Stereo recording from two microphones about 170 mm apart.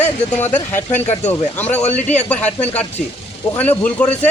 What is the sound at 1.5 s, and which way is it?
Speech, 10° left (ahead or behind).